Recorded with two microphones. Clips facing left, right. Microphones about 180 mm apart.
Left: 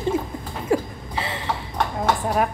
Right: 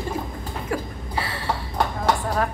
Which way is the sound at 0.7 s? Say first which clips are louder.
Left 7 dB; 25° left (ahead or behind).